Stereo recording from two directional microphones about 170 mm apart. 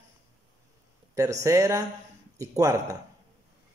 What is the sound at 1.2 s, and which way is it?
A man's voice, 20° right (ahead or behind).